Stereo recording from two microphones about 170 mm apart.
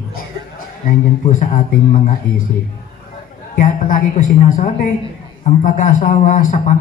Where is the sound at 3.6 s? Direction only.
50° left (ahead or behind).